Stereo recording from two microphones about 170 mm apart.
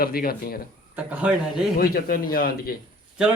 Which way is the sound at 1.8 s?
60° left (ahead or behind).